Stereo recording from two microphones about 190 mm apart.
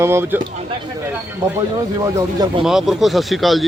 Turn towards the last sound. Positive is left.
turn(degrees=0)  # may be behind; listen again after turning